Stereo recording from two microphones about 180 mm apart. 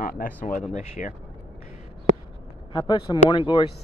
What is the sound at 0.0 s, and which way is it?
Speech, 50° left (ahead or behind).